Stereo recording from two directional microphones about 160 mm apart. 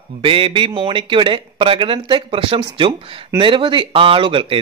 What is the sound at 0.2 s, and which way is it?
Speech, 35° right (ahead or behind).